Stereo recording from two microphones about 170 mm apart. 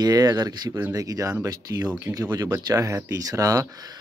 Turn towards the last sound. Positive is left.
turn(degrees=-20)  # may be behind; listen again after turning